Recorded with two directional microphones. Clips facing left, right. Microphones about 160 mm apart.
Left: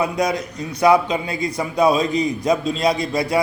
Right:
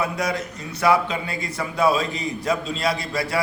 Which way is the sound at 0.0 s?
20° left (ahead or behind).